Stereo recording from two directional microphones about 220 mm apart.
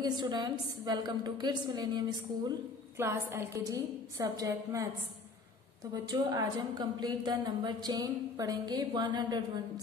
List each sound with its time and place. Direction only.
0.2 s a woman's voice: 20° right (ahead or behind)
6.0 s a woman's voice: 20° right (ahead or behind)